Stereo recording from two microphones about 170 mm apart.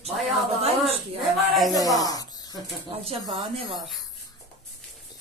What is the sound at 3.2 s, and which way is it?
Speech, 25° right (ahead or behind).